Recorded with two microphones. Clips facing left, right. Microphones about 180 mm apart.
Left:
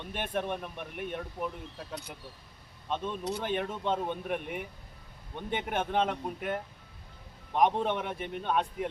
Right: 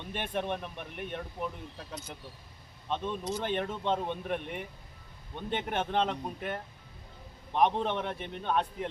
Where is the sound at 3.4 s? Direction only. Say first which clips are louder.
Even; 5° left (ahead or behind).